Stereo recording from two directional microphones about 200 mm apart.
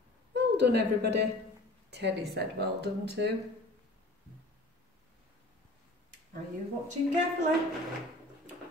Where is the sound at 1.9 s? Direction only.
55° right (ahead or behind).